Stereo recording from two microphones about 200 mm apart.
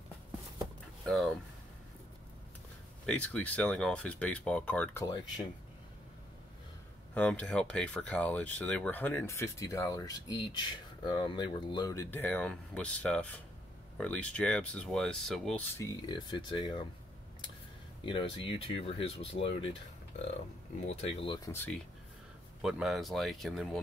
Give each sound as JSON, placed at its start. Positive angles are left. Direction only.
{"t": 1.0, "sound": "speech", "side_deg": 0}
{"t": 3.1, "sound": "speech", "side_deg": 5}
{"t": 7.2, "sound": "speech", "side_deg": 5}
{"t": 15.8, "sound": "speech", "side_deg": 20}
{"t": 18.0, "sound": "speech", "side_deg": 25}
{"t": 20.8, "sound": "speech", "side_deg": 25}
{"t": 21.5, "sound": "speech", "side_deg": 10}
{"t": 22.6, "sound": "speech", "side_deg": -5}